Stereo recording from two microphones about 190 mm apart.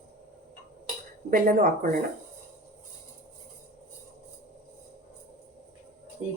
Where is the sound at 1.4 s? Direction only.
50° right (ahead or behind).